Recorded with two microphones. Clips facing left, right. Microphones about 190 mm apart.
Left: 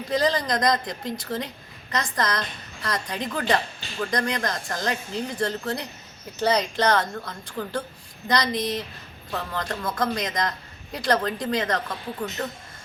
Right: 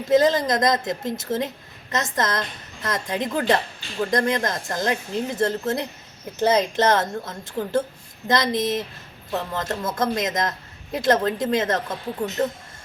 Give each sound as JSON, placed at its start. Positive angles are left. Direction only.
{"t": 0.1, "sound": "speech", "side_deg": -20}